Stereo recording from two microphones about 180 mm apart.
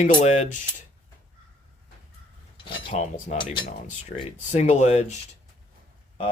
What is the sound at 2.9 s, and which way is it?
Speech, 40° left (ahead or behind).